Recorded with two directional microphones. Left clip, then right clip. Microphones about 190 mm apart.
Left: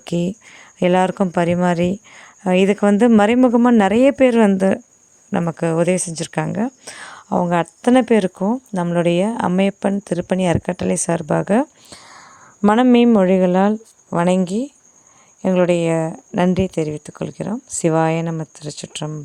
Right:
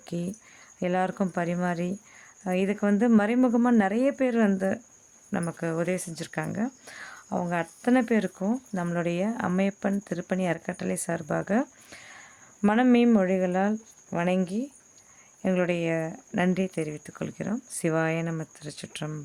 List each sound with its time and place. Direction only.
0.0 s speech: 45° left (ahead or behind); by 19.1 s 30° left (ahead or behind)